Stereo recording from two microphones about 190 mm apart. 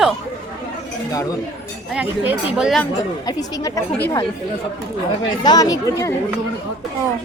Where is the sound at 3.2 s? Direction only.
20° left (ahead or behind).